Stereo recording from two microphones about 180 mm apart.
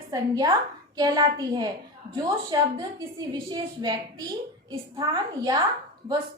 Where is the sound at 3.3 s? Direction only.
25° right (ahead or behind).